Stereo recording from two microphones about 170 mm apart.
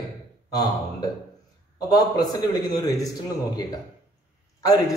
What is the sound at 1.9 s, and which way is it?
A man's voice, 20° left (ahead or behind).